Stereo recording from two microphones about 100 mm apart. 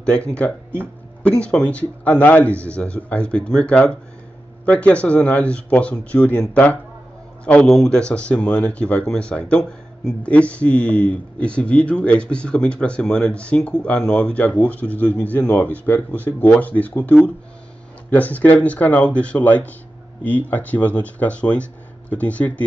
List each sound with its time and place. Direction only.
0.0 s speech: 10° left (ahead or behind)